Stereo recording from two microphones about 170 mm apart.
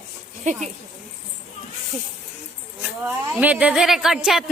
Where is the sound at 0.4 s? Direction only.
45° right (ahead or behind).